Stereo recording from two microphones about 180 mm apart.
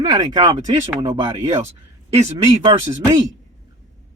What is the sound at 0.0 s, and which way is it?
Speech, 20° right (ahead or behind).